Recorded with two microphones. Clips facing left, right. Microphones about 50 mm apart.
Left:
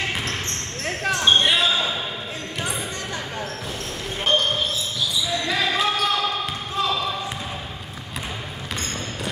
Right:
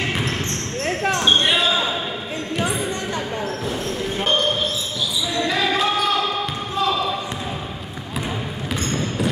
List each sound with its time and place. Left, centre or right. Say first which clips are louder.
1.2 s basketball bounce: left 1 dB; centre
5.3 s basketball bounce: right 4 dB; centre